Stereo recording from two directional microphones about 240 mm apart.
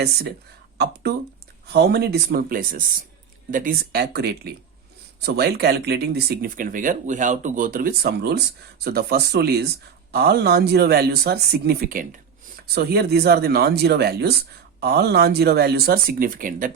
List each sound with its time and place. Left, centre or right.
1.6 s speech: right